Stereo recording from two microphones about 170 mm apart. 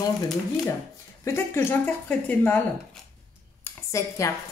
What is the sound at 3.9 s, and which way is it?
Speech, 20° left (ahead or behind).